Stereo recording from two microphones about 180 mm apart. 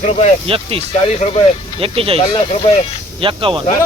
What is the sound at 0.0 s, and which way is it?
Speech, 40° left (ahead or behind).